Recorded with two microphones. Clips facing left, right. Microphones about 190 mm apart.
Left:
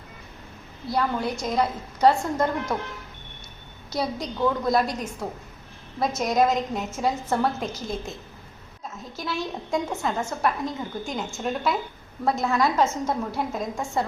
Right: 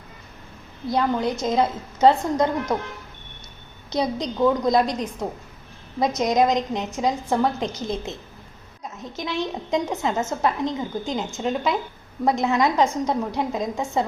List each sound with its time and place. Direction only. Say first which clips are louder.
0.9 s a woman's voice: right 3 dB; 20° right (ahead or behind)
3.9 s a woman's voice: right 4 dB; 20° right (ahead or behind)
6.1 s a woman's voice: right 2 dB; 20° right (ahead or behind)
9.1 s a woman's voice: right 3 dB; 20° right (ahead or behind)